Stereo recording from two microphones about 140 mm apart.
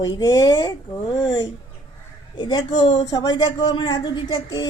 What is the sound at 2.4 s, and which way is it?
Speech, 30° left (ahead or behind).